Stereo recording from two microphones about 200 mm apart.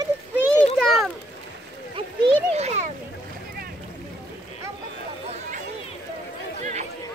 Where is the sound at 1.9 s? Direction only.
30° right (ahead or behind).